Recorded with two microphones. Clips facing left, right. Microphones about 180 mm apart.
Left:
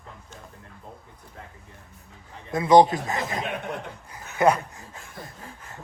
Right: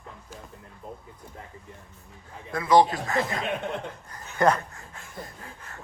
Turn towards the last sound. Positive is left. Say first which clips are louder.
# left 2 dB
turn(degrees=15)  # may be behind; listen again after turning